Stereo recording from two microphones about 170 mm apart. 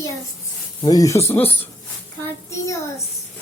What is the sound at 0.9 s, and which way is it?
Speech, 20° left (ahead or behind).